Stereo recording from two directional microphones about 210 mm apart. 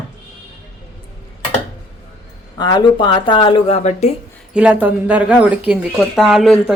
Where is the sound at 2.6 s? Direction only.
20° left (ahead or behind).